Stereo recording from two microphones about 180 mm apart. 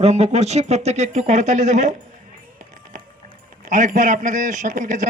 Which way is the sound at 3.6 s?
45° right (ahead or behind).